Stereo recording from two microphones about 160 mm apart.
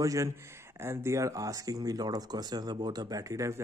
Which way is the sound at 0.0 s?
20° right (ahead or behind).